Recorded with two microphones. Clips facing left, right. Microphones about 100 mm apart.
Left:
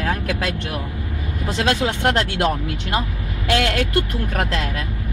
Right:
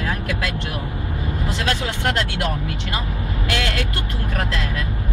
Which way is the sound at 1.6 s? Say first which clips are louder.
Left 5 dB; 30° left (ahead or behind).